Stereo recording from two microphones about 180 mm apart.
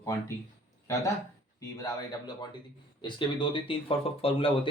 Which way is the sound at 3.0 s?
25° left (ahead or behind).